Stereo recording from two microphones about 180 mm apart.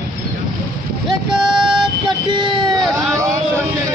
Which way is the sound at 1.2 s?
5° right (ahead or behind).